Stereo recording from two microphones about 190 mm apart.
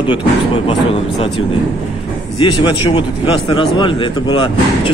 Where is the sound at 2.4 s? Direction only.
25° left (ahead or behind).